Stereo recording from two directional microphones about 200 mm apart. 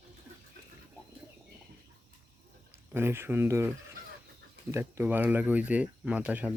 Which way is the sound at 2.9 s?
10° right (ahead or behind).